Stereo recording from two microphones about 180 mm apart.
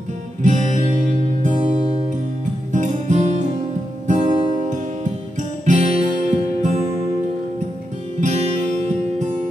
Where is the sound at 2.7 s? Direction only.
40° right (ahead or behind).